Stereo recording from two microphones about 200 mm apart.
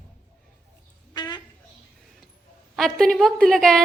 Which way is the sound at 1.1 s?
20° left (ahead or behind).